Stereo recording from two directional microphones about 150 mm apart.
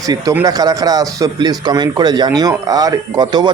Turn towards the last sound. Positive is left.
turn(degrees=-30)  # may be behind; listen again after turning